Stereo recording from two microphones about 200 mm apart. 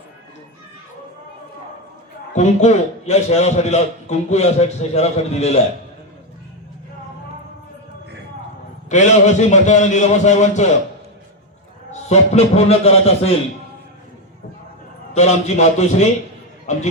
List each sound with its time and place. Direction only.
2.3 s a man's voice: 35° left (ahead or behind)
8.9 s a man's voice: 35° left (ahead or behind)
11.9 s a man's voice: 35° left (ahead or behind)
15.1 s a man's voice: 35° left (ahead or behind)